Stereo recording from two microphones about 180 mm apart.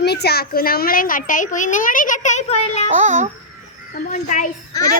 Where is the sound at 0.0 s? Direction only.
65° left (ahead or behind); by 2.8 s 40° left (ahead or behind).